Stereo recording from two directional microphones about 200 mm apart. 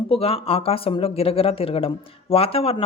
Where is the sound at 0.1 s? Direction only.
30° left (ahead or behind).